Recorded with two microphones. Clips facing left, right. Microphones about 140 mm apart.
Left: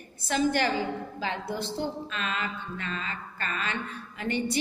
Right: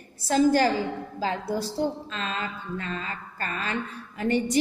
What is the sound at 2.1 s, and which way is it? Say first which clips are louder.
A woman's voice: right 1 dB; 30° right (ahead or behind).